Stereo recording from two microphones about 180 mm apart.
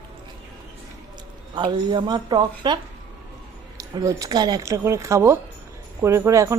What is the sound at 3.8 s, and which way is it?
Speech, 20° right (ahead or behind).